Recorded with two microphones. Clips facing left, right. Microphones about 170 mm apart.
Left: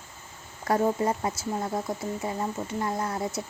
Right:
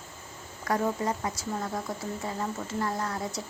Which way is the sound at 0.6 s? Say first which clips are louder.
Left 4 dB; 30° left (ahead or behind).